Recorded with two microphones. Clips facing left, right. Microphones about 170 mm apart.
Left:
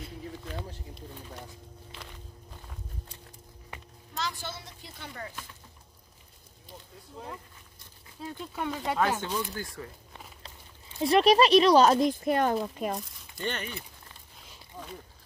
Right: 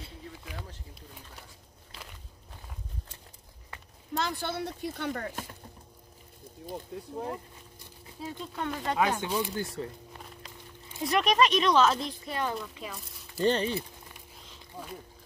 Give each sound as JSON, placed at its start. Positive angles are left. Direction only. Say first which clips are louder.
{"t": 0.5, "sound": "a sound", "louder": "left 5 dB", "side_deg": -10}
{"t": 4.2, "sound": "speech", "louder": "right 4 dB", "side_deg": -55}
{"t": 6.6, "sound": "speech", "louder": "right 11 dB", "side_deg": -50}
{"t": 8.2, "sound": "speech", "louder": "even", "side_deg": -5}
{"t": 8.5, "sound": "speech", "louder": "left 1 dB", "side_deg": 5}
{"t": 9.2, "sound": "speech", "louder": "right 2 dB", "side_deg": -15}
{"t": 11.1, "sound": "speech", "louder": "left 5 dB", "side_deg": 35}
{"t": 13.4, "sound": "speech", "louder": "right 8 dB", "side_deg": -30}
{"t": 14.8, "sound": "a sound", "louder": "right 1 dB", "side_deg": -10}